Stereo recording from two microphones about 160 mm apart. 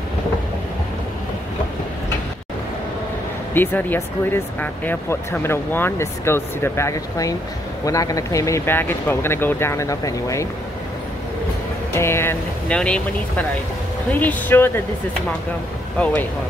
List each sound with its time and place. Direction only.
3.5 s speech: 10° left (ahead or behind)
11.9 s speech: 15° left (ahead or behind)
16.0 s speech: 10° left (ahead or behind)